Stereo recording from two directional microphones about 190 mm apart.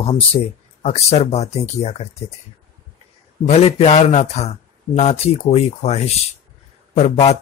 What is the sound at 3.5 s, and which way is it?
Speech, 35° left (ahead or behind).